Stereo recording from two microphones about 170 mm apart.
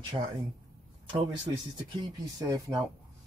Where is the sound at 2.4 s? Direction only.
20° right (ahead or behind).